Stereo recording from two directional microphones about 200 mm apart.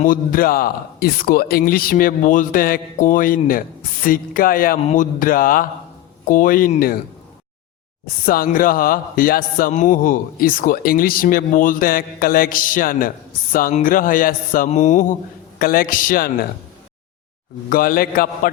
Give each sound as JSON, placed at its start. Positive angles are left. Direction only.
{"t": 0.0, "sound": "speech", "side_deg": 45}
{"t": 8.2, "sound": "speech", "side_deg": 45}
{"t": 17.7, "sound": "speech", "side_deg": 45}